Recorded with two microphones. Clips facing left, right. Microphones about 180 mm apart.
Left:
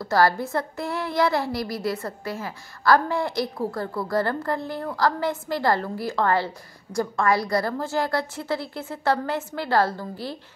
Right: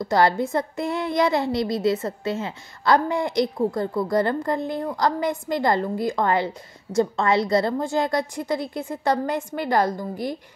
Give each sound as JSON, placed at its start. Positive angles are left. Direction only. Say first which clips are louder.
{"t": 0.0, "sound": "a child's voice", "louder": "right 1 dB", "side_deg": -20}